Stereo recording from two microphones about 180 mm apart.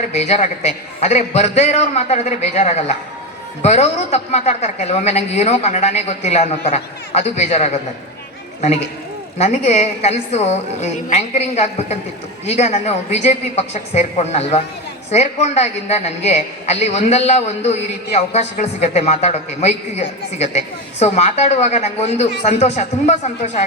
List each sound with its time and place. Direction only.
0.1 s a man's voice: 35° left (ahead or behind)
9.4 s a man's voice: 40° left (ahead or behind)